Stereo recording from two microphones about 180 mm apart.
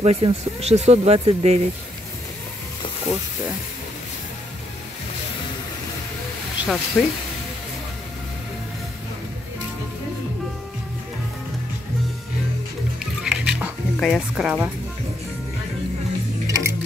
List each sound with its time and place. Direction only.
0.0 s speech: 35° right (ahead or behind)
6.6 s speech: centre (ahead or behind)
13.2 s music: 5° right (ahead or behind)
16.4 s music: 20° right (ahead or behind)